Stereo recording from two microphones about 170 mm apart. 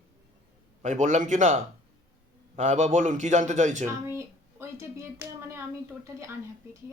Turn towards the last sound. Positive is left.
turn(degrees=-15)  # may be behind; listen again after turning